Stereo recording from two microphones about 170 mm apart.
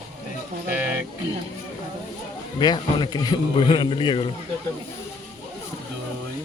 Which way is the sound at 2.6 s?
25° left (ahead or behind).